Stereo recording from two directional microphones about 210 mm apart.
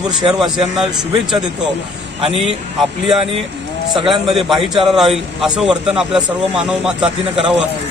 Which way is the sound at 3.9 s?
Centre (ahead or behind).